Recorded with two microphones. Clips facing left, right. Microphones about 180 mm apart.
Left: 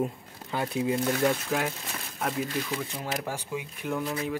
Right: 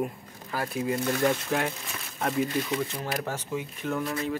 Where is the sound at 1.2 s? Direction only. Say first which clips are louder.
Right 1 dB; 5° left (ahead or behind).